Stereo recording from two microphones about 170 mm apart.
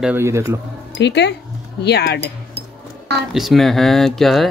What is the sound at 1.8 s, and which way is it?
Speech, 75° left (ahead or behind).